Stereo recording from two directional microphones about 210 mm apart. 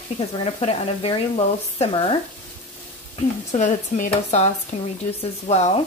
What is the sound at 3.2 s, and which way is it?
Speech, 35° left (ahead or behind).